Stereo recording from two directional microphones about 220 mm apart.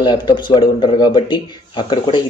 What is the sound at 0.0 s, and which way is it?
Speech, 20° left (ahead or behind).